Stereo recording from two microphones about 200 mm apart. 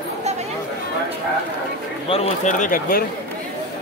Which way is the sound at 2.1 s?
35° left (ahead or behind).